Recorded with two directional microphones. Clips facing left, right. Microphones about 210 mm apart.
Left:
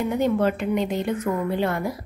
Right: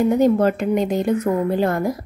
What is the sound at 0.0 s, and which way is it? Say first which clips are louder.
A woman's voice: right 6 dB; 40° right (ahead or behind).